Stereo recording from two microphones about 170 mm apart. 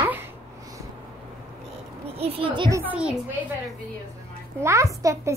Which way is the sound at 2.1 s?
35° right (ahead or behind).